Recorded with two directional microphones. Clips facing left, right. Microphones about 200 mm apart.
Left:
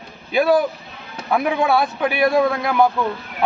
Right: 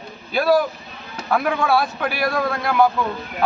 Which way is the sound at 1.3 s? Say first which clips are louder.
Left 1 dB; 20° left (ahead or behind).